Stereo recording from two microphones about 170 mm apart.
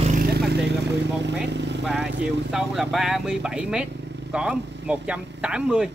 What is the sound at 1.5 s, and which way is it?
Speech, 90° right.